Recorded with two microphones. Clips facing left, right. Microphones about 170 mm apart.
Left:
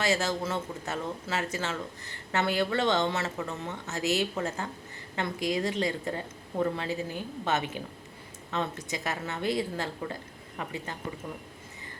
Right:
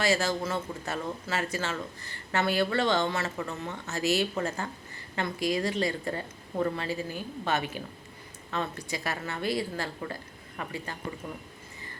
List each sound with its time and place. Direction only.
0.0 s speech: 20° left (ahead or behind)